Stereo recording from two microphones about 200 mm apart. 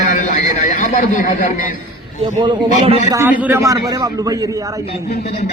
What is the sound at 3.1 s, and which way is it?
A man's voice, 10° right (ahead or behind).